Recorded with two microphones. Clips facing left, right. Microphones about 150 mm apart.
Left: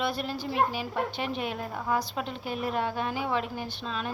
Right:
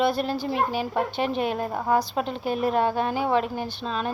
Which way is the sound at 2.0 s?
35° right (ahead or behind).